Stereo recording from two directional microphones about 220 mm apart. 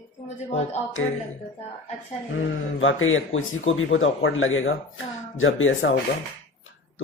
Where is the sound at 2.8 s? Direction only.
65° left (ahead or behind).